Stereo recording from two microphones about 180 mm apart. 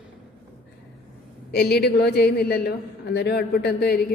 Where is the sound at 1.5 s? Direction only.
65° left (ahead or behind).